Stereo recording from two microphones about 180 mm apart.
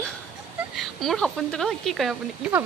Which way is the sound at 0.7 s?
Centre (ahead or behind).